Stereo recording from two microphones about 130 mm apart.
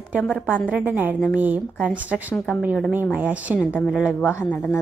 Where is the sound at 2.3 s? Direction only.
5° left (ahead or behind).